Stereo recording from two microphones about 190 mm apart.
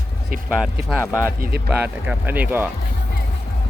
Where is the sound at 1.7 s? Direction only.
10° right (ahead or behind).